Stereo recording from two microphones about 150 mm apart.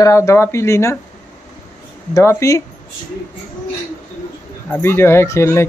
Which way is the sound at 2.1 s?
20° left (ahead or behind).